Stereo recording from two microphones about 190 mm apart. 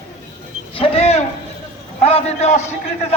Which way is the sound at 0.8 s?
35° left (ahead or behind).